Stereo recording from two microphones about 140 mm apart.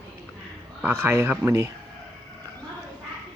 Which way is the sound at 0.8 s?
15° right (ahead or behind).